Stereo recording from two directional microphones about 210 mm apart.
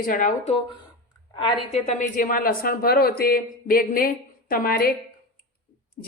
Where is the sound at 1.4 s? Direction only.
25° left (ahead or behind); by 4.9 s 45° left (ahead or behind).